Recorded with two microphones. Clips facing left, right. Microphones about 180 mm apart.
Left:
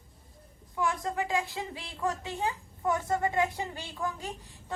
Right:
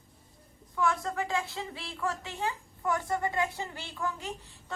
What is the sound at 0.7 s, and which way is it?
A woman's voice, 15° left (ahead or behind).